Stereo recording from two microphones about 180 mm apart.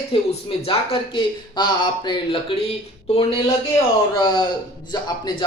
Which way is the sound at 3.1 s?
35° left (ahead or behind).